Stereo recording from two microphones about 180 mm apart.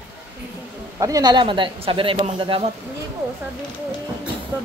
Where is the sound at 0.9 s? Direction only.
20° right (ahead or behind).